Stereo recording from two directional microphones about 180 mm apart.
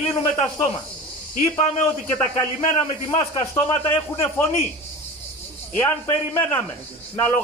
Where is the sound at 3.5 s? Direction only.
15° left (ahead or behind).